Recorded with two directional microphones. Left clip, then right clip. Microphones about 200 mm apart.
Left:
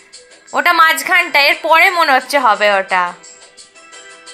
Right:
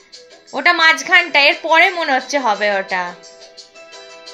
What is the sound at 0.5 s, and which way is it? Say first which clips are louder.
Speech: left 2 dB; centre (ahead or behind).